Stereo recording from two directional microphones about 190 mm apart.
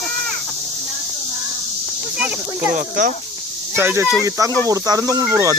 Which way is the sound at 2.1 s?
5° right (ahead or behind).